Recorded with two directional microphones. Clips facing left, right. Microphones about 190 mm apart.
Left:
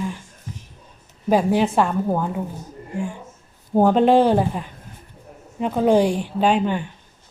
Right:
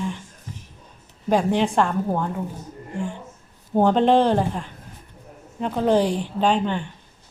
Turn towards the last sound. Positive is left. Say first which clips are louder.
# left 2 dB
turn(degrees=10)  # may be behind; listen again after turning